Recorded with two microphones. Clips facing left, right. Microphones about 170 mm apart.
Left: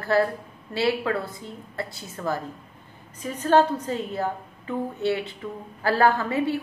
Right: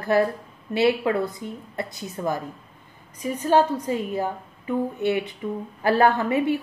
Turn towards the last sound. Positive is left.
turn(degrees=-20)  # may be behind; listen again after turning